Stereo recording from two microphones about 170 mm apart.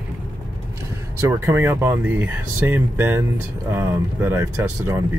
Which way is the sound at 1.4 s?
15° right (ahead or behind).